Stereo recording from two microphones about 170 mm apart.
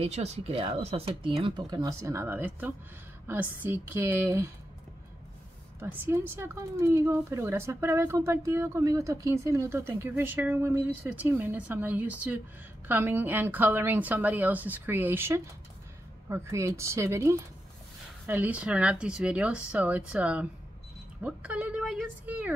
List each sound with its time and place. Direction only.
0.0 s speech: 40° right (ahead or behind); by 4.5 s 15° right (ahead or behind)
5.8 s speech: 10° right (ahead or behind)